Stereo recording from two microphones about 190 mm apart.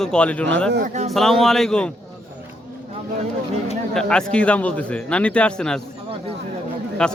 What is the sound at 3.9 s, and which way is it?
A man's voice, 5° left (ahead or behind).